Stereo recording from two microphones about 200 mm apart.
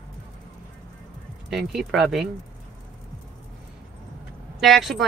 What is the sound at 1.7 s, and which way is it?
Speech, centre (ahead or behind).